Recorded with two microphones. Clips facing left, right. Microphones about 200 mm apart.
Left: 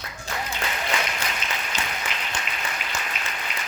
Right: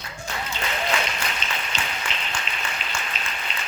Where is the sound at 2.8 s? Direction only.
25° right (ahead or behind).